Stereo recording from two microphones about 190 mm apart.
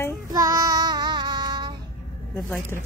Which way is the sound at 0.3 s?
20° right (ahead or behind).